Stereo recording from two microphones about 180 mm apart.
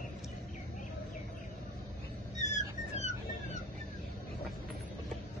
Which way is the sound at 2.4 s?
40° left (ahead or behind).